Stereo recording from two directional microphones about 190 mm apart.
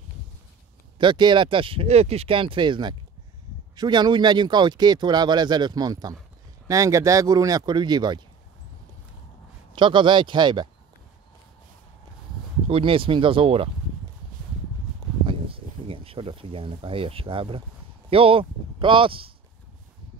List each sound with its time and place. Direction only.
0.9 s speech: 25° right (ahead or behind)
9.8 s speech: 25° right (ahead or behind)
12.6 s speech: 30° right (ahead or behind)
15.2 s speech: 30° right (ahead or behind)